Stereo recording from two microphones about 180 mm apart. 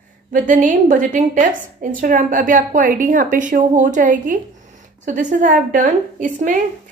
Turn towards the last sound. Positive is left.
turn(degrees=-50)  # may be behind; listen again after turning